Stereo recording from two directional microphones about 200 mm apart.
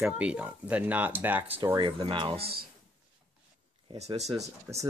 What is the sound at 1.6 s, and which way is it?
Speech, 25° right (ahead or behind).